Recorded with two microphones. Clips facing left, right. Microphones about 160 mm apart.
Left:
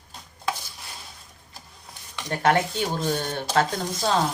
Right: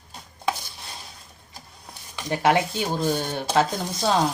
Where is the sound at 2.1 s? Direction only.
10° right (ahead or behind).